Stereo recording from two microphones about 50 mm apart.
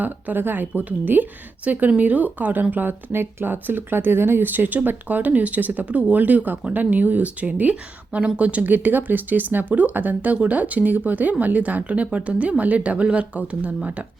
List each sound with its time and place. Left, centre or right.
0.0 s speech: right